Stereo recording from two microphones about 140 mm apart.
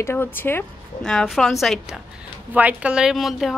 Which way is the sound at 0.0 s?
15° left (ahead or behind).